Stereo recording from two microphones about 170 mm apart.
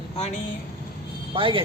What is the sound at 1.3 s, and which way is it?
Speech, 30° right (ahead or behind).